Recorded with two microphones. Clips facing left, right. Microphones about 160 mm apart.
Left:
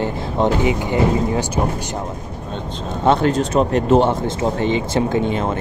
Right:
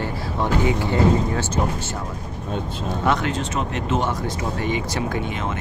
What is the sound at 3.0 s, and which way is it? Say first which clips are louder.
Speech: left 8 dB; 35° left (ahead or behind).